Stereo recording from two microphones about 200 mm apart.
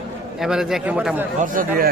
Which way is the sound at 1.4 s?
45° right (ahead or behind).